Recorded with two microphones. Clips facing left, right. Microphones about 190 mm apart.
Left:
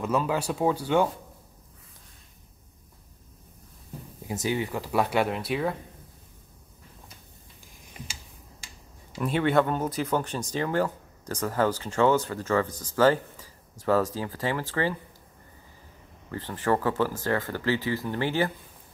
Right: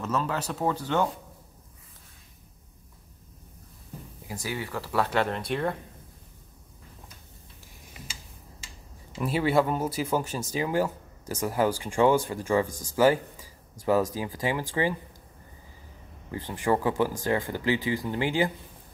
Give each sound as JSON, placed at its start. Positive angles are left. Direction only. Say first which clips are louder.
{"t": 0.0, "sound": "speech", "louder": "left 3 dB", "side_deg": 10}
{"t": 4.3, "sound": "speech", "louder": "left 5 dB", "side_deg": 20}
{"t": 9.2, "sound": "speech", "louder": "left 1 dB", "side_deg": -5}
{"t": 16.3, "sound": "speech", "louder": "even", "side_deg": -10}